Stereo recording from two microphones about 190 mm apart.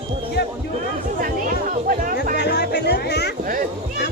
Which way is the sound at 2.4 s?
60° left (ahead or behind).